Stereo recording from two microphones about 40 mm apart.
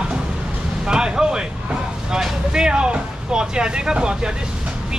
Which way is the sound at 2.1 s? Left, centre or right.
Centre.